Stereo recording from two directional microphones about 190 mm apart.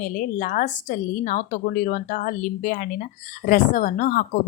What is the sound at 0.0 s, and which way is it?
A woman's voice, 45° left (ahead or behind).